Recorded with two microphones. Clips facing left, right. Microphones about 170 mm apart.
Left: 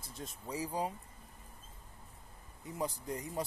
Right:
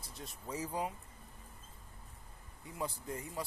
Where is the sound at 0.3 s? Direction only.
15° left (ahead or behind).